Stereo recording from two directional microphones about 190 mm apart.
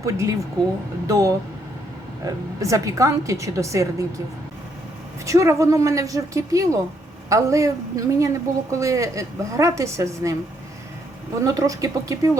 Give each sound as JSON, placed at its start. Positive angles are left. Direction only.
{"t": 0.0, "sound": "a woman's voice", "side_deg": -15}
{"t": 5.2, "sound": "a woman's voice", "side_deg": -15}
{"t": 11.4, "sound": "a woman's voice", "side_deg": -15}